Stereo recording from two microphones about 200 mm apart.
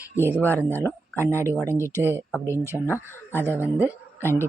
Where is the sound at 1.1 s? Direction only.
15° right (ahead or behind).